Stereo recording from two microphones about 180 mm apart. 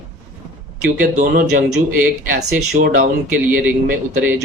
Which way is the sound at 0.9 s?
50° right (ahead or behind).